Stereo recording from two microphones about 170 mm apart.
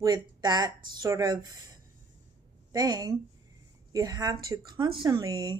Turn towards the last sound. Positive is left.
turn(degrees=-25)  # may be behind; listen again after turning